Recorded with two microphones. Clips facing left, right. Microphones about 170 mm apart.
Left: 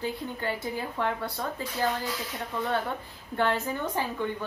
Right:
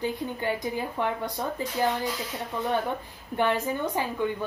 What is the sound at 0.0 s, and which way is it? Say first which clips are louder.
Speech: right 3 dB; 15° right (ahead or behind).